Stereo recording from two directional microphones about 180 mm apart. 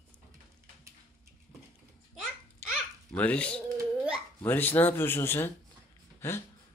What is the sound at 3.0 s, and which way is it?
Speech, 5° left (ahead or behind).